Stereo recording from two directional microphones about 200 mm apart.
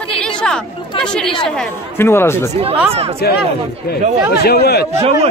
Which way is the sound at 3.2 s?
50° left (ahead or behind).